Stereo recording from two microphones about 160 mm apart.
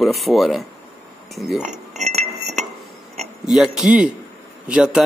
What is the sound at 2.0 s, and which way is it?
Glass, 45° right (ahead or behind).